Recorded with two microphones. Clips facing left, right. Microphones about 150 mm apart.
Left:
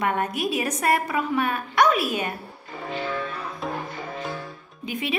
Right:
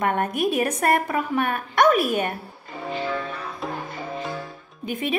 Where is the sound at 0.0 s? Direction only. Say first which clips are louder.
Right 2 dB; 50° right (ahead or behind).